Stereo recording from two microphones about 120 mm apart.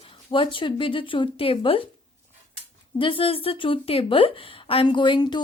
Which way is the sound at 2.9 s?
45° left (ahead or behind).